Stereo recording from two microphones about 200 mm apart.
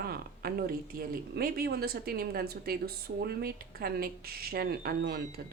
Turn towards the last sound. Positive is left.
turn(degrees=-50)  # may be behind; listen again after turning